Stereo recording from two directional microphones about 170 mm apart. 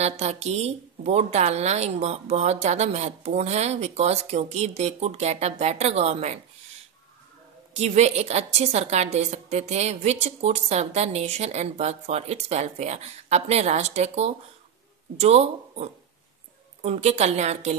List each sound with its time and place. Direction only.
0.0 s a woman's voice: 40° right (ahead or behind)
7.7 s a woman's voice: 40° right (ahead or behind)